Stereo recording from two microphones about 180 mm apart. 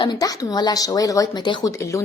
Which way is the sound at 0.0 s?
20° left (ahead or behind).